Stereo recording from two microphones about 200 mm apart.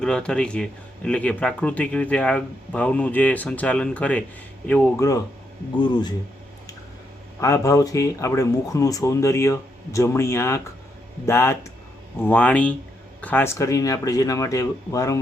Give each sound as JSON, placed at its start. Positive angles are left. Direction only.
{"t": 0.0, "sound": "speech", "side_deg": 5}
{"t": 7.4, "sound": "speech", "side_deg": 15}